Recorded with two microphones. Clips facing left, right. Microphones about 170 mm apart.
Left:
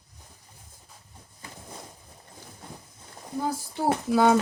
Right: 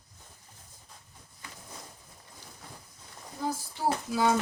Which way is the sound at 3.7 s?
60° left (ahead or behind).